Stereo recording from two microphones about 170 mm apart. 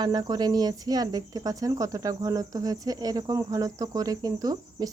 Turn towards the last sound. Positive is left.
turn(degrees=-20)  # may be behind; listen again after turning